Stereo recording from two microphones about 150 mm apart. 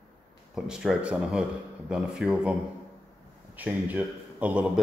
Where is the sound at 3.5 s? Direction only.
10° right (ahead or behind).